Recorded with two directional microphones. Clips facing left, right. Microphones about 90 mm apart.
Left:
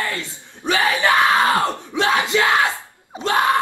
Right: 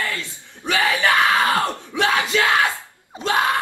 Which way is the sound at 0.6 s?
20° left (ahead or behind).